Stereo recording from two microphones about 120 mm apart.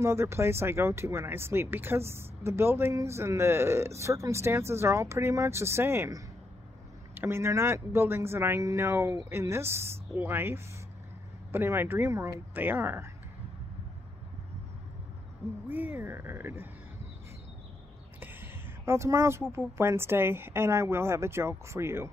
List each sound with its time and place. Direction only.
0.0 s speech: 20° right (ahead or behind)
15.7 s speech: 15° right (ahead or behind)
18.2 s speech: 20° right (ahead or behind)